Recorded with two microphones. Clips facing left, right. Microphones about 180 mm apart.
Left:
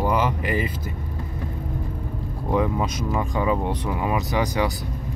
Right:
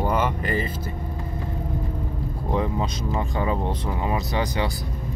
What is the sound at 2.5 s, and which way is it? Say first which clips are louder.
Speech: left 3 dB; 25° right (ahead or behind).